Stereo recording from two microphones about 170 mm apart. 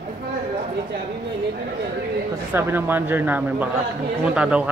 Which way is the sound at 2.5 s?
15° right (ahead or behind).